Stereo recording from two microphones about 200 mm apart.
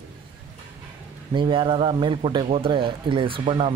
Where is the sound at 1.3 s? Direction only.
25° right (ahead or behind).